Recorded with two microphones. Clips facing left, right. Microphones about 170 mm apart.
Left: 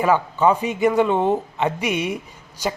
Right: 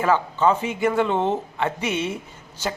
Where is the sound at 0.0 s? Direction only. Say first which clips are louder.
Left 2 dB; 15° left (ahead or behind).